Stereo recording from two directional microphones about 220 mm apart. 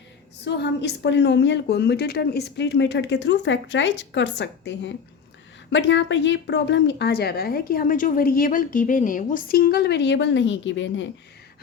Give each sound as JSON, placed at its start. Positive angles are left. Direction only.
{"t": 0.4, "sound": "a woman's voice", "side_deg": 50}